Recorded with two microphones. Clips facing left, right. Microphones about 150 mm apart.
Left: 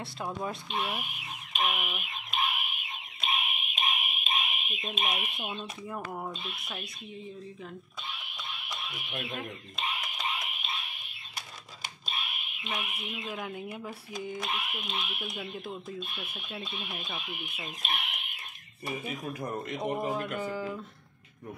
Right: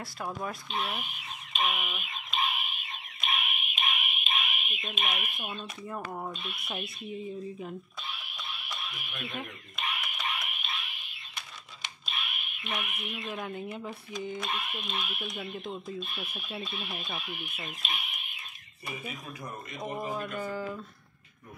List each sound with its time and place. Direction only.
0.0 s speech: 15° left (ahead or behind)
0.7 s a sound: centre (ahead or behind)
3.2 s a sound: 30° left (ahead or behind)
5.8 s speech: centre (ahead or behind)
8.8 s a sound: 25° left (ahead or behind)
12.5 s speech: 20° left (ahead or behind)
13.2 s speech: 10° left (ahead or behind)
15.1 s speech: 5° left (ahead or behind)
16.2 s speech: 10° right (ahead or behind)
16.6 s speech: 15° left (ahead or behind)
18.0 s bird: 75° left (ahead or behind)
18.9 s speech: 35° left (ahead or behind)
20.0 s speech: 15° left (ahead or behind)